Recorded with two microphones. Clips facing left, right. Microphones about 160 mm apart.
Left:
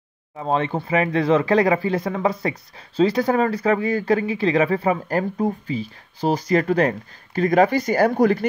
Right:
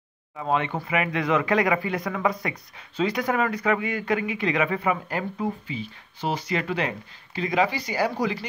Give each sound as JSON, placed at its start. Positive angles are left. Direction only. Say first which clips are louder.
{"t": 0.4, "sound": "speech", "louder": "left 3 dB", "side_deg": 35}